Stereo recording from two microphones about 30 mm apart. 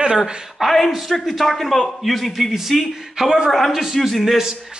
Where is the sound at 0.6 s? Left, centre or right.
Centre.